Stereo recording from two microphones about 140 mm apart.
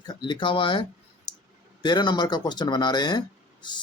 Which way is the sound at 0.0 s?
30° left (ahead or behind).